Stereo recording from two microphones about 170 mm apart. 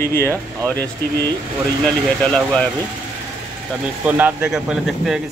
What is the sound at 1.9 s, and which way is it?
Speech, 5° left (ahead or behind).